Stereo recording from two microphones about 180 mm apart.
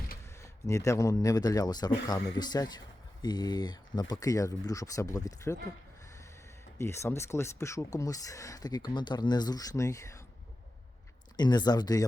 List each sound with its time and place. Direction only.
0.4 s speech: 15° left (ahead or behind)
6.7 s speech: 15° left (ahead or behind)
11.3 s speech: 25° left (ahead or behind)